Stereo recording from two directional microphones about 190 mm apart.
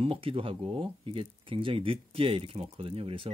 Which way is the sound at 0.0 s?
30° right (ahead or behind).